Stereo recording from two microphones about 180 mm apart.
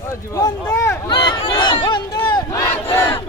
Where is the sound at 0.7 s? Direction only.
15° left (ahead or behind).